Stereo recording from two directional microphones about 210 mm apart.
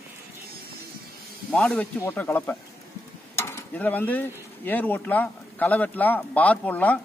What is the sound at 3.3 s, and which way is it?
Stir, 10° left (ahead or behind).